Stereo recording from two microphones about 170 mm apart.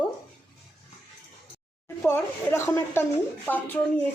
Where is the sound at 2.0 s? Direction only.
15° left (ahead or behind).